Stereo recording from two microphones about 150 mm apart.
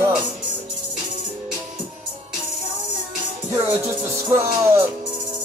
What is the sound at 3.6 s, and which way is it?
Music, 15° right (ahead or behind).